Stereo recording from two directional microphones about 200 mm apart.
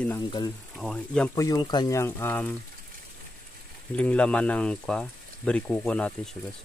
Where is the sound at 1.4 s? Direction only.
20° left (ahead or behind).